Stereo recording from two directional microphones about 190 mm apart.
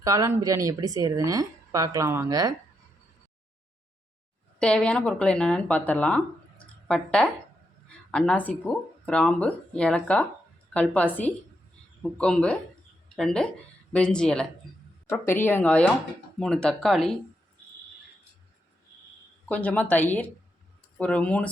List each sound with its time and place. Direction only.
0.0 s a woman's voice: 15° right (ahead or behind)
4.6 s speech: 5° left (ahead or behind)
19.5 s speech: 5° left (ahead or behind)